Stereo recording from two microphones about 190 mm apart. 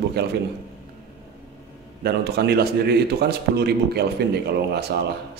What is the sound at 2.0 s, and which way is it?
A man's voice, 55° right (ahead or behind).